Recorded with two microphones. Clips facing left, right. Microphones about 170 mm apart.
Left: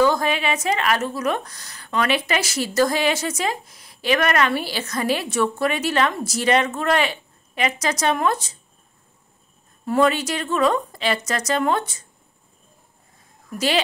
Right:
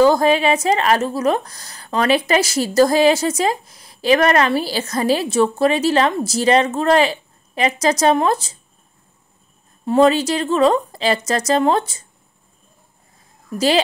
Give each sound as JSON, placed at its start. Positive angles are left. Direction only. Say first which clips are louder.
{"t": 0.0, "sound": "a woman's voice", "louder": "right 6 dB", "side_deg": -35}
{"t": 9.8, "sound": "a woman's voice", "louder": "right 5 dB", "side_deg": -30}